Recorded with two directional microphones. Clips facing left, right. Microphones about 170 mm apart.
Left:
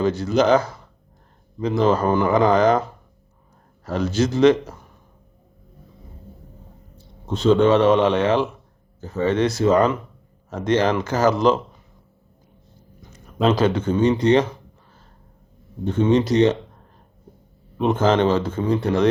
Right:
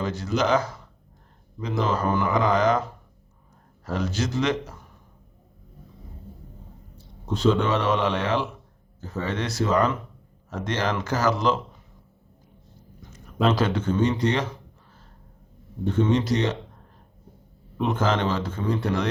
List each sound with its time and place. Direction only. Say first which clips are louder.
0.0 s speech: left 7 dB; 30° left (ahead or behind)
3.9 s speech: left 6 dB; 30° left (ahead or behind)
7.3 s speech: left 7 dB; 25° left (ahead or behind)
13.6 s speech: left 4 dB; 20° left (ahead or behind)
15.9 s speech: left 4 dB; 20° left (ahead or behind)
17.7 s speech: left 6 dB; 20° left (ahead or behind)